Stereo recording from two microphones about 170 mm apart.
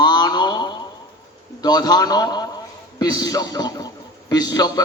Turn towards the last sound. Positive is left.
turn(degrees=20)  # may be behind; listen again after turning